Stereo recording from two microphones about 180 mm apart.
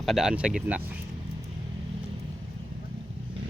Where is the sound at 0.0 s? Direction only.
Centre (ahead or behind).